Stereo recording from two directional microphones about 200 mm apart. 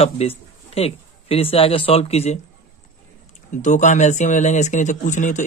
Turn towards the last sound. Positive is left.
turn(degrees=40)  # may be behind; listen again after turning